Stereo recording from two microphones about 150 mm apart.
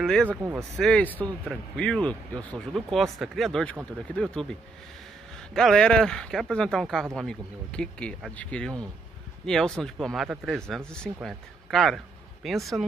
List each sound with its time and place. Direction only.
0.0 s speech: 5° left (ahead or behind)
0.3 s speech: 10° right (ahead or behind)
0.6 s speech: 5° left (ahead or behind)